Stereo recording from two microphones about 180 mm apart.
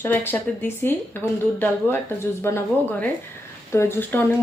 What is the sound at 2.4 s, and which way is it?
Speech, 15° left (ahead or behind).